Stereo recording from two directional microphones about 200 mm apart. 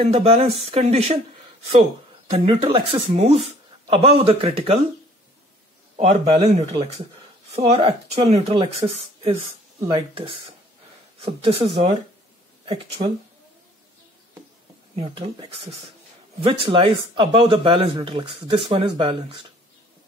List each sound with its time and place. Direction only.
0.0 s speech: 30° right (ahead or behind)
2.3 s speech: 30° right (ahead or behind)
5.9 s speech: 30° right (ahead or behind)
9.3 s speech: 15° right (ahead or behind)
15.0 s speech: 30° right (ahead or behind)
16.4 s speech: 25° right (ahead or behind)